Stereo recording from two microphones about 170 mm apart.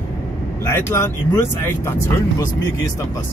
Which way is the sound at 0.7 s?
15° left (ahead or behind).